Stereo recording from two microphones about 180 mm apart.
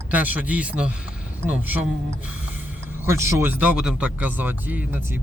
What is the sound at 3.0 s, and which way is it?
Speech, 15° right (ahead or behind).